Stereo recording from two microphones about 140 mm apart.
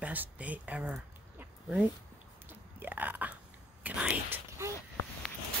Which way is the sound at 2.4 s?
15° right (ahead or behind).